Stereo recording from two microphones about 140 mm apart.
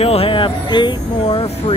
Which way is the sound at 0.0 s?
45° left (ahead or behind).